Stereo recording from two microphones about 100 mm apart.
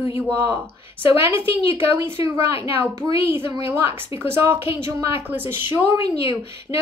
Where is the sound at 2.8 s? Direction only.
30° right (ahead or behind).